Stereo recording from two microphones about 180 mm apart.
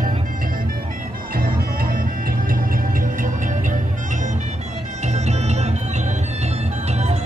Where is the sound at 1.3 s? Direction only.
55° right (ahead or behind).